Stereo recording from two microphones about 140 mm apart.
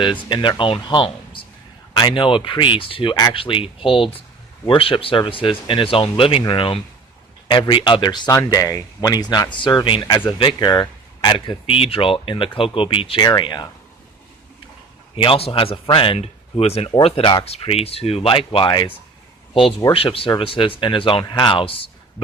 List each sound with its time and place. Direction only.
0.0 s a man's voice: 35° left (ahead or behind)
15.1 s a man's voice: 40° left (ahead or behind)